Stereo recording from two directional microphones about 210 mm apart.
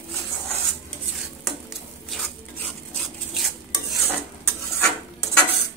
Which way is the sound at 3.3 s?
Centre (ahead or behind).